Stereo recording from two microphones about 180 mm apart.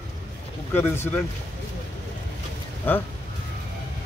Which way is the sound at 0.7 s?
15° left (ahead or behind).